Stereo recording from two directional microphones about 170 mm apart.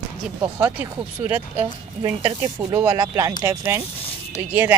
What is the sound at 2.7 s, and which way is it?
Speech, 20° right (ahead or behind).